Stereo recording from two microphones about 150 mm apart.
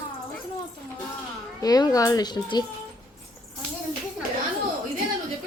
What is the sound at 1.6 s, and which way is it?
A child's voice, 25° left (ahead or behind).